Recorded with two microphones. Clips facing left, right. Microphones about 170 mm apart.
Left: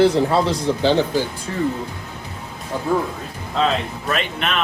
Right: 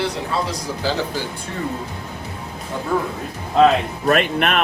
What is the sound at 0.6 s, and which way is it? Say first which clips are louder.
Speech: left 6 dB; 25° left (ahead or behind).